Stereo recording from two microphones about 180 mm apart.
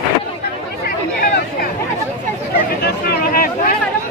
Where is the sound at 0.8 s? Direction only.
55° left (ahead or behind).